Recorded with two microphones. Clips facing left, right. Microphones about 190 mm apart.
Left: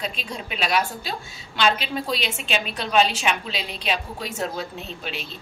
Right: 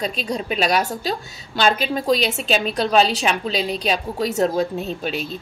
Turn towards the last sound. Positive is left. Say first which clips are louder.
# right 8 dB
turn(degrees=-45)  # may be behind; listen again after turning